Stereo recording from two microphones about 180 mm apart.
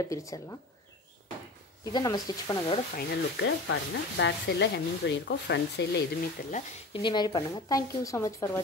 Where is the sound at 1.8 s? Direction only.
25° left (ahead or behind).